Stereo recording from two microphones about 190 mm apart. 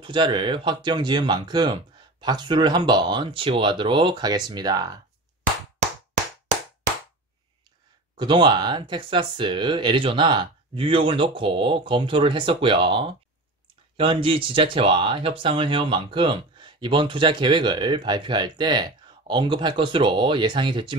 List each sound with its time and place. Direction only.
0.0 s speech: 25° right (ahead or behind)
8.2 s speech: 25° right (ahead or behind)